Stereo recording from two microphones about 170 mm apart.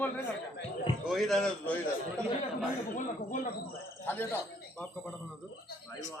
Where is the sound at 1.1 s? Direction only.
Centre (ahead or behind).